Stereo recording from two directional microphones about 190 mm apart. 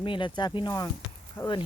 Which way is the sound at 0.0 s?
25° left (ahead or behind).